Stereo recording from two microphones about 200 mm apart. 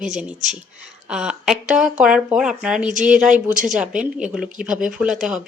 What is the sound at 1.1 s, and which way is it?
Speech, 5° right (ahead or behind).